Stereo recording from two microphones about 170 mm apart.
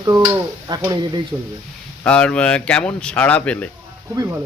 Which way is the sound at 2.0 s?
5° left (ahead or behind).